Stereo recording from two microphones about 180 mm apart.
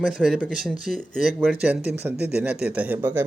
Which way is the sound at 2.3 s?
10° right (ahead or behind).